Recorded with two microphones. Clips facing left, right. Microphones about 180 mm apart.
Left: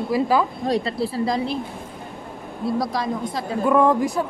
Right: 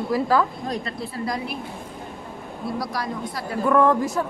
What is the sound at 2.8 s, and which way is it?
Speech, 25° left (ahead or behind).